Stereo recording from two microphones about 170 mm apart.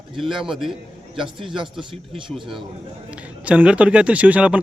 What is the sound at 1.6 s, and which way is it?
Speech, 30° right (ahead or behind).